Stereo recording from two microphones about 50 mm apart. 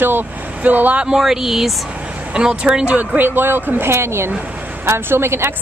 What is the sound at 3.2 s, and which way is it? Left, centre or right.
Speech, right.